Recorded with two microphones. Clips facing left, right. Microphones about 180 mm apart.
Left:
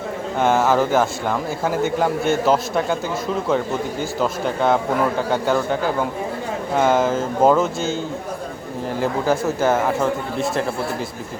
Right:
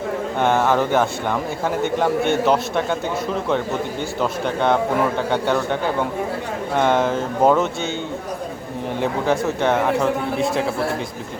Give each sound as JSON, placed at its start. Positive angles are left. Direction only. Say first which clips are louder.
{"t": 0.3, "sound": "a man's voice", "louder": "left 1 dB", "side_deg": 5}
{"t": 4.2, "sound": "a man's voice", "louder": "even", "side_deg": 5}
{"t": 9.0, "sound": "a man's voice", "louder": "even", "side_deg": 0}